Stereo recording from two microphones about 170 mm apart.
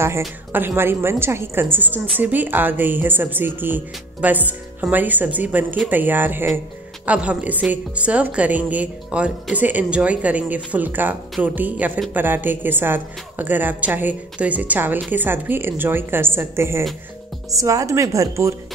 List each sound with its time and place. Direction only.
0.5 s a woman's voice: 10° right (ahead or behind)